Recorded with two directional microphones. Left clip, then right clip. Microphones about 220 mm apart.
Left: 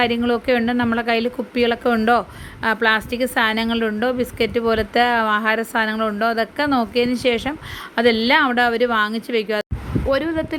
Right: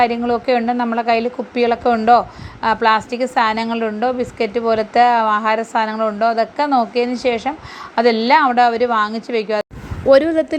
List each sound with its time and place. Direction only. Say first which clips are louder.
0.0 s a woman's voice: right 3 dB; 15° left (ahead or behind)
10.1 s speech: right 9 dB; 15° right (ahead or behind)